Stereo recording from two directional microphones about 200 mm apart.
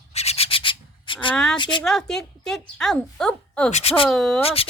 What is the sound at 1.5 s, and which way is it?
Speech, 25° left (ahead or behind).